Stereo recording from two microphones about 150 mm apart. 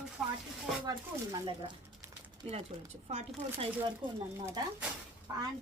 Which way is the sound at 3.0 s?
45° right (ahead or behind).